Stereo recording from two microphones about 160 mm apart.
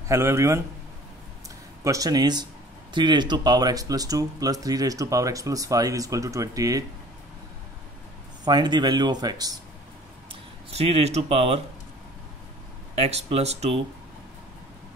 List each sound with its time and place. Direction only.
0.1 s a man's voice: 15° right (ahead or behind)
1.9 s speech: 20° right (ahead or behind)
8.5 s speech: 25° right (ahead or behind)
10.7 s speech: 40° right (ahead or behind)
12.9 s speech: 40° right (ahead or behind)